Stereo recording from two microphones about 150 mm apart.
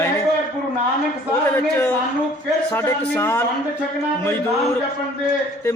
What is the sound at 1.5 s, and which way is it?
A man's voice, 15° left (ahead or behind).